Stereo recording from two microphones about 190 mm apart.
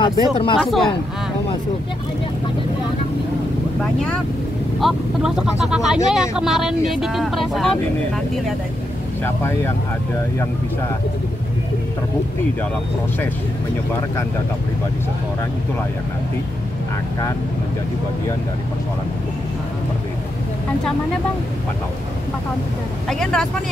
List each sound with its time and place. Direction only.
0.0 s speech: 25° left (ahead or behind)
0.6 s speech: centre (ahead or behind)
4.7 s speech: centre (ahead or behind)
9.2 s speech: 15° left (ahead or behind)
23.0 s speech: 5° left (ahead or behind)